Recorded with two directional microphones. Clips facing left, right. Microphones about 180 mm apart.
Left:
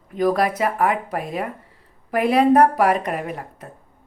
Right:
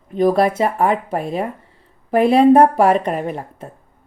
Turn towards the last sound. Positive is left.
turn(degrees=-30)  # may be behind; listen again after turning